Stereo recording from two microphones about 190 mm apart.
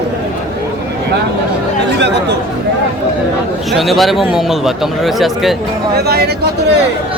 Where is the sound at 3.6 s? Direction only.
Centre (ahead or behind).